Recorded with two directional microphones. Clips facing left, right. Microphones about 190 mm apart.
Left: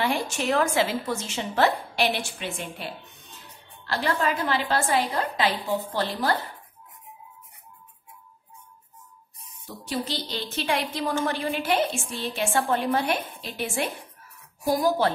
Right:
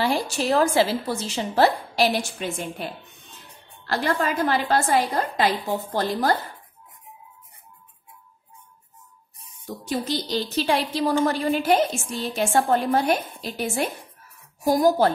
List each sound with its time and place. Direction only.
0.0 s a woman's voice: 35° right (ahead or behind)
9.8 s a woman's voice: 45° right (ahead or behind)